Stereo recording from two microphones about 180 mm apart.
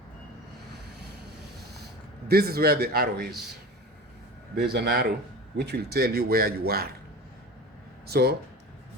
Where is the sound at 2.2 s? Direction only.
60° right (ahead or behind).